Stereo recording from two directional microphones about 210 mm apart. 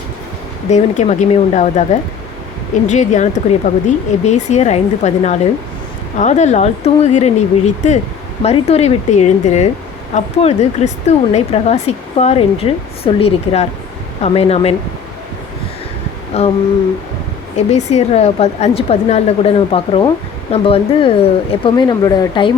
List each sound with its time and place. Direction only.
0.7 s speech: 30° left (ahead or behind)
16.3 s speech: 30° left (ahead or behind)
17.7 s speech: 30° left (ahead or behind)